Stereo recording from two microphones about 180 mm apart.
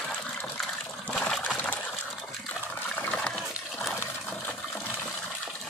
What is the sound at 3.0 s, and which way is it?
Water, 5° left (ahead or behind).